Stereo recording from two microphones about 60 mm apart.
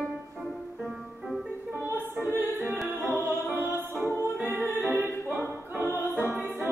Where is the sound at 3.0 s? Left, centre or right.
Right.